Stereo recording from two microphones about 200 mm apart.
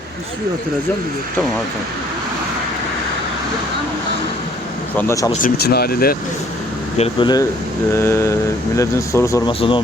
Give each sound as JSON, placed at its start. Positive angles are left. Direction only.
{"t": 4.9, "sound": "speech", "side_deg": 15}
{"t": 5.6, "sound": "speech", "side_deg": 50}
{"t": 6.9, "sound": "speech", "side_deg": 30}
{"t": 9.5, "sound": "speech", "side_deg": 25}